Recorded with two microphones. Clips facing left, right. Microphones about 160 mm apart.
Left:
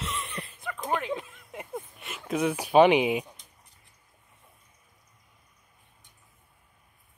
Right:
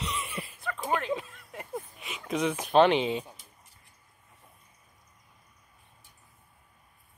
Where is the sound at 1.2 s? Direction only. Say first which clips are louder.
Left 2 dB; 15° left (ahead or behind).